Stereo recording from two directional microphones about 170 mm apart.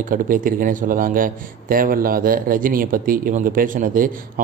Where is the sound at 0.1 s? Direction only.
55° right (ahead or behind).